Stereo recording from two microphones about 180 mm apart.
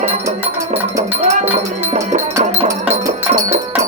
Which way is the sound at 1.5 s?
40° right (ahead or behind).